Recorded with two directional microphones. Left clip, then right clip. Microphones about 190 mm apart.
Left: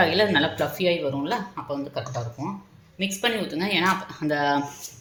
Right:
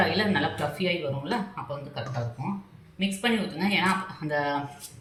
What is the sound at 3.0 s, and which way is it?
Speech, 55° left (ahead or behind).